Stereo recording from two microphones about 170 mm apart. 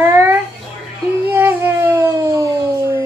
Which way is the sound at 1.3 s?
15° right (ahead or behind).